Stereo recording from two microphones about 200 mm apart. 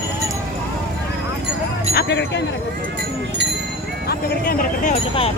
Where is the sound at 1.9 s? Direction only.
55° left (ahead or behind).